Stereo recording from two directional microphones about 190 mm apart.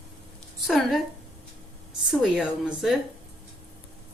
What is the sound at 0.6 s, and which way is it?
Speech, centre (ahead or behind).